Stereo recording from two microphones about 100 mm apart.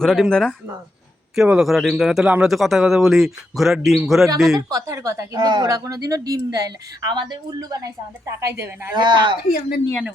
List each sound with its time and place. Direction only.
0.0 s speech: 5° left (ahead or behind)
1.4 s speech: 5° right (ahead or behind)
4.7 s a woman's voice: 35° right (ahead or behind)
9.0 s speech: 50° right (ahead or behind)